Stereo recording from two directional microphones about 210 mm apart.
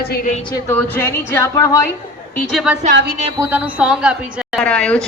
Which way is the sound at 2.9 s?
50° right (ahead or behind).